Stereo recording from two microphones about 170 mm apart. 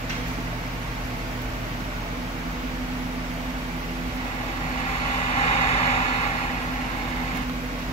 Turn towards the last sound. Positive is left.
turn(degrees=35)  # may be behind; listen again after turning